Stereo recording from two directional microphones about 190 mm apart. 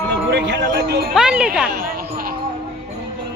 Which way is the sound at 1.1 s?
5° right (ahead or behind).